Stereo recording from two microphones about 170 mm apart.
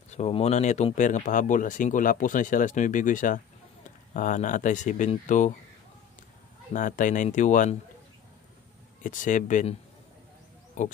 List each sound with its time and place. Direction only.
0.1 s speech: 40° left (ahead or behind)
6.7 s speech: 50° left (ahead or behind)
9.0 s speech: 50° left (ahead or behind)